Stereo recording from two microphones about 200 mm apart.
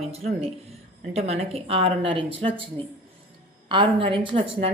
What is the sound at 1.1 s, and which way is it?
Speech, 30° right (ahead or behind).